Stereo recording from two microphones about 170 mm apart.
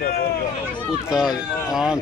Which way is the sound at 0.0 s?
65° left (ahead or behind).